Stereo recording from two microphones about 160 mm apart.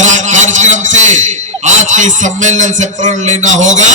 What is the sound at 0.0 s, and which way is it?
A man's voice, 50° right (ahead or behind).